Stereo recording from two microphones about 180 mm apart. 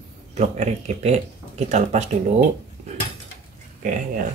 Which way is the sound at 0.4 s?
35° right (ahead or behind).